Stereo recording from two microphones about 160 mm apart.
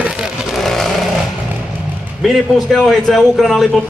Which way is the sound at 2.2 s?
Centre (ahead or behind).